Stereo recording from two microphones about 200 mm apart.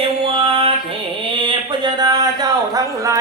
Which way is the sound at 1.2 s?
25° right (ahead or behind).